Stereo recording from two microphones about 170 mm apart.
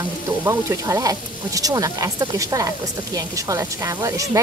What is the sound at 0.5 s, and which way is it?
Speech, 20° right (ahead or behind).